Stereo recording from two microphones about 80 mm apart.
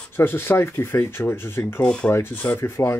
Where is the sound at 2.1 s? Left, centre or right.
Left.